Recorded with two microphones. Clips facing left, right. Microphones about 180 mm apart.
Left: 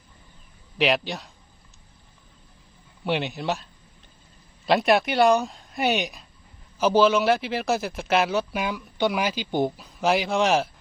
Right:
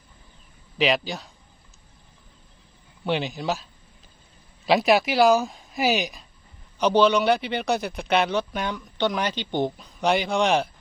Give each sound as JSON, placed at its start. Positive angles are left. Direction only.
{"t": 0.8, "sound": "a man's voice", "side_deg": 0}
{"t": 3.0, "sound": "a man's voice", "side_deg": 0}